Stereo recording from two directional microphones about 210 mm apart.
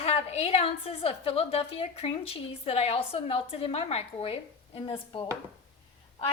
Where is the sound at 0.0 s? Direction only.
30° left (ahead or behind).